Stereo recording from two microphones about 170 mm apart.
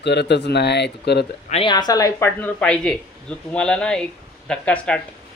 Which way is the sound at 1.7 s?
25° left (ahead or behind).